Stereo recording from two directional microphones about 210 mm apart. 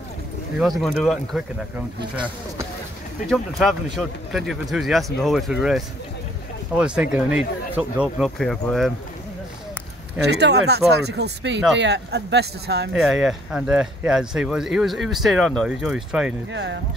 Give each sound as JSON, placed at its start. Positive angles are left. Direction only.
{"t": 0.6, "sound": "speech", "side_deg": 0}
{"t": 3.3, "sound": "speech", "side_deg": 0}
{"t": 10.2, "sound": "speech", "side_deg": -50}
{"t": 12.9, "sound": "speech", "side_deg": 0}
{"t": 16.5, "sound": "speech", "side_deg": -55}